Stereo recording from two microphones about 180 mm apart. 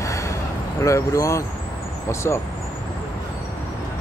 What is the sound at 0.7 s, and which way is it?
Speech, 15° left (ahead or behind).